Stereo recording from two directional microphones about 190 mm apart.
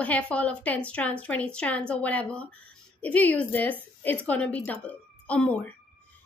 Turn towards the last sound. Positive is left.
turn(degrees=5)  # may be behind; listen again after turning